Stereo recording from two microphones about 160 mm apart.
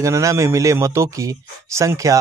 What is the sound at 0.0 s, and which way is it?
Speech, 20° right (ahead or behind).